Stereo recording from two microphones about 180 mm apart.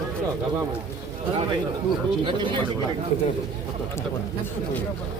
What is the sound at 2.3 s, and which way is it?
Speech, 30° right (ahead or behind).